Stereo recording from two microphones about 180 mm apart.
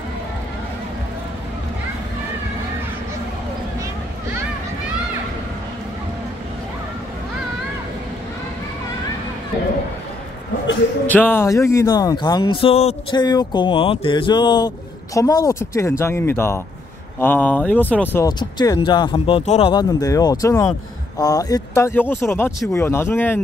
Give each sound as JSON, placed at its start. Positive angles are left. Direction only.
{"t": 11.1, "sound": "speech", "side_deg": 10}
{"t": 18.4, "sound": "speech", "side_deg": 25}
{"t": 19.7, "sound": "speech", "side_deg": 20}